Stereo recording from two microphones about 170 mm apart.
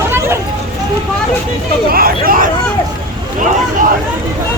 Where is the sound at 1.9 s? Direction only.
60° right (ahead or behind).